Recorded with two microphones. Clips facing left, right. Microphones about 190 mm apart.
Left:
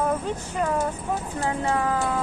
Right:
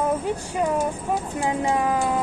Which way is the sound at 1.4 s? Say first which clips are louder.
Right 2 dB; 15° right (ahead or behind).